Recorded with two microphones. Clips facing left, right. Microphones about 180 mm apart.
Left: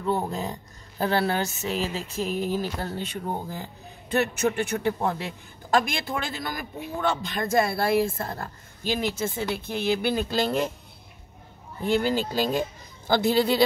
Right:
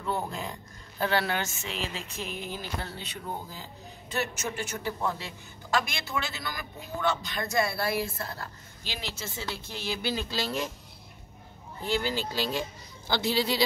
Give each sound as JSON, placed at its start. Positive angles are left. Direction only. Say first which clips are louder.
{"t": 0.0, "sound": "speech", "louder": "left 5 dB", "side_deg": 35}
{"t": 11.8, "sound": "speech", "louder": "left 6 dB", "side_deg": 50}